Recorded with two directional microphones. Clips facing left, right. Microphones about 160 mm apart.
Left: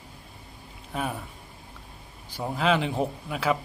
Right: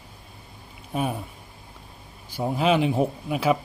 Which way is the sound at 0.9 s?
20° right (ahead or behind).